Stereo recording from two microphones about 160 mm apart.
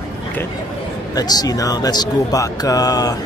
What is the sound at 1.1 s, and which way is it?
Speech, 25° left (ahead or behind).